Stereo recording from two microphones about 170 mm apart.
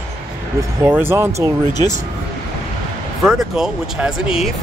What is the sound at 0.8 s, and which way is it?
Speech, 15° right (ahead or behind).